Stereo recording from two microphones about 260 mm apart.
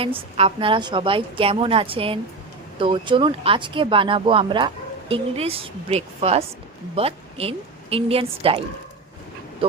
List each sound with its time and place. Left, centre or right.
0.0 s speech: right